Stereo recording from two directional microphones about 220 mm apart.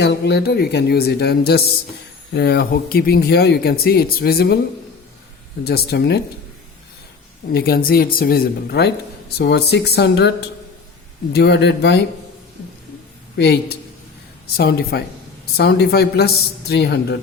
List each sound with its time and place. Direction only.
0.0 s speech: 50° left (ahead or behind)
5.6 s speech: 45° left (ahead or behind)
7.5 s speech: 45° left (ahead or behind)
13.3 s speech: 50° left (ahead or behind)